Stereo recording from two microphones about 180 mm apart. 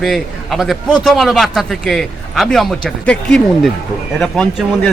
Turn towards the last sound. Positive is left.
turn(degrees=5)  # may be behind; listen again after turning